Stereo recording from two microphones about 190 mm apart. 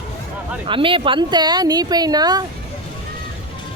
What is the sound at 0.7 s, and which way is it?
Speech, 25° right (ahead or behind).